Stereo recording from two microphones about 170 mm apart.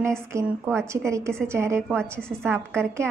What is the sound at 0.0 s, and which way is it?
A woman's voice, 15° right (ahead or behind).